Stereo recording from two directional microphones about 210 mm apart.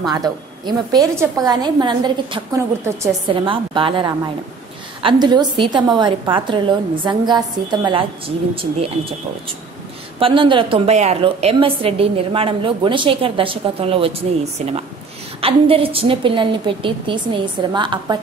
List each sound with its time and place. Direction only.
0.1 s a woman's voice: 20° right (ahead or behind)
10.1 s a woman's voice: 25° right (ahead or behind)